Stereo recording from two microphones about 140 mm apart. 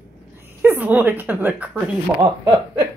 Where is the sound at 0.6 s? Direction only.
15° right (ahead or behind).